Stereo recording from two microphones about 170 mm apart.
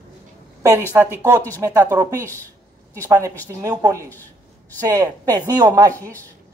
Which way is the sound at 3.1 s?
20° right (ahead or behind).